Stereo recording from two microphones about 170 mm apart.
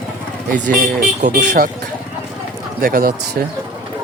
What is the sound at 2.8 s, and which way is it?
Speech, 60° right (ahead or behind).